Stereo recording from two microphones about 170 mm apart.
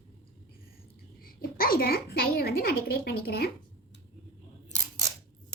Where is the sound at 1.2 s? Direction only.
60° left (ahead or behind).